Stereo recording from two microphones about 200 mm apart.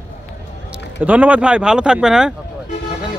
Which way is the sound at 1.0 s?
5° right (ahead or behind).